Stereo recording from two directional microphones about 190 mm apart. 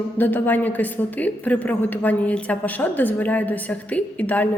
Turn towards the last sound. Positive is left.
turn(degrees=10)  # may be behind; listen again after turning